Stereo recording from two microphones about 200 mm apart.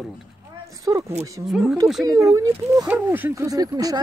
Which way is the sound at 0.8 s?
15° right (ahead or behind).